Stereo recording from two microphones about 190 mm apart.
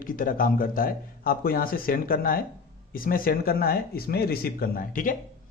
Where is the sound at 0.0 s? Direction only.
45° left (ahead or behind).